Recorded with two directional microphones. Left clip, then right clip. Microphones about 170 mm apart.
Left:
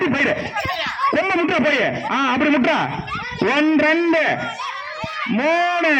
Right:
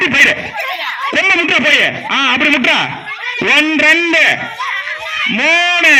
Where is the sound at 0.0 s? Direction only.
20° right (ahead or behind).